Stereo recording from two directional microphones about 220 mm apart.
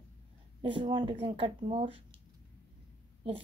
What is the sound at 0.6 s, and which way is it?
Speech, 20° right (ahead or behind).